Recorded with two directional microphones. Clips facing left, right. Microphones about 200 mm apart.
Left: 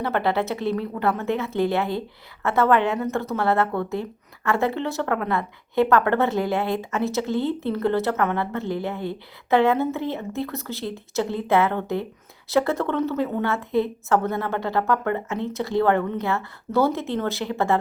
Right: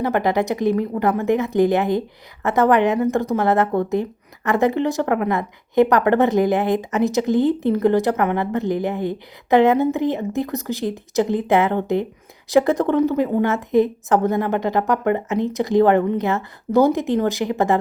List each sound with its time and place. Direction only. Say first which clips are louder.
0.0 s a woman's voice: right 4 dB; 15° right (ahead or behind)